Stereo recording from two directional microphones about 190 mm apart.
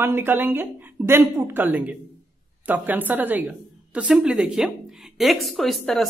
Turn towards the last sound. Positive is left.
turn(degrees=0)  # may be behind; listen again after turning